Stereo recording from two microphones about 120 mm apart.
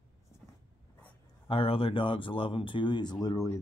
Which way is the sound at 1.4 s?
50° left (ahead or behind).